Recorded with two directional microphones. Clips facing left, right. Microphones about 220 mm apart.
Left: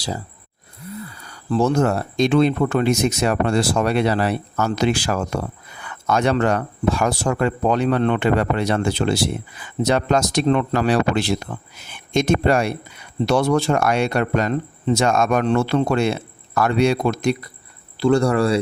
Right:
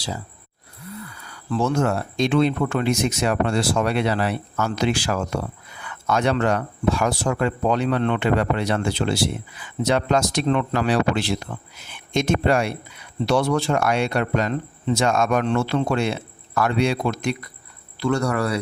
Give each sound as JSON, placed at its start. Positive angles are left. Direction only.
{"t": 1.2, "sound": "speech", "side_deg": 40}
{"t": 18.0, "sound": "speech", "side_deg": 30}